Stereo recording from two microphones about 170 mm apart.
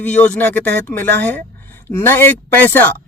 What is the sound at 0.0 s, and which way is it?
Speech, 10° left (ahead or behind).